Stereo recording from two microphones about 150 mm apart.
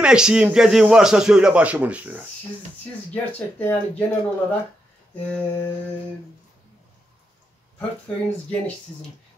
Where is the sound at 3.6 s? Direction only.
10° left (ahead or behind).